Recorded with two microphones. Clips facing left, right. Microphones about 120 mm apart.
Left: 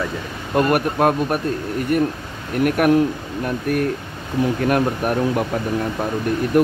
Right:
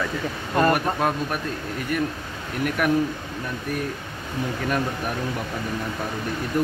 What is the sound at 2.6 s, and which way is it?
Speech, 55° left (ahead or behind).